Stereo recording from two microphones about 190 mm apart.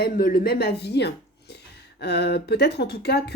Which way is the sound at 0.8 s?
60° left (ahead or behind).